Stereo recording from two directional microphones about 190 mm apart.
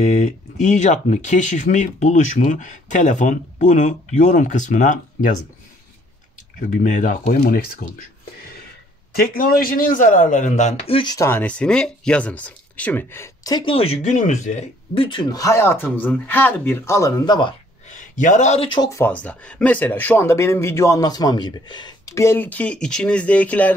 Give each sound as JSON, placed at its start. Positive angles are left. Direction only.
{"t": 0.0, "sound": "speech", "side_deg": 40}
{"t": 6.8, "sound": "speech", "side_deg": 40}
{"t": 9.1, "sound": "a man's voice", "side_deg": 50}
{"t": 17.8, "sound": "speech", "side_deg": 40}